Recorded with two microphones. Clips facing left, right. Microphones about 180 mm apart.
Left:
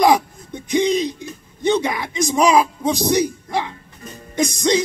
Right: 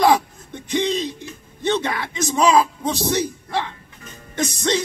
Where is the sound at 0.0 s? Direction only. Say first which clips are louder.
Left 1 dB; 15° left (ahead or behind).